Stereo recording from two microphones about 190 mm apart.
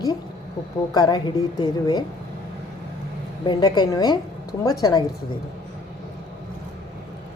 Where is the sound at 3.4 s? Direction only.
20° left (ahead or behind).